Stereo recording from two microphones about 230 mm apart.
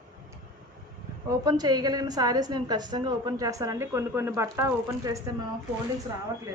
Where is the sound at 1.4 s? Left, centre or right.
Centre.